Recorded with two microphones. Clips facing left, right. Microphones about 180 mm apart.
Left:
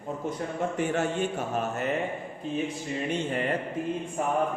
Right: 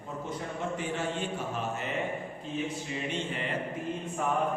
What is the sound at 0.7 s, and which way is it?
Speech, 50° left (ahead or behind).